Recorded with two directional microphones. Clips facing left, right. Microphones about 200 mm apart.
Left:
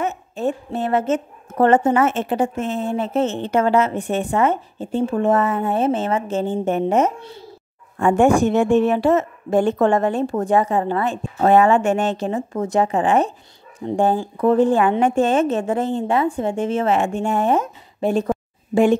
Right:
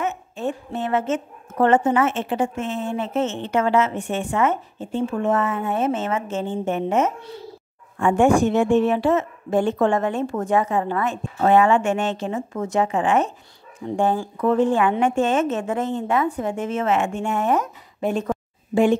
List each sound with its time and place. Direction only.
0.0 s a woman's voice: 35° left (ahead or behind)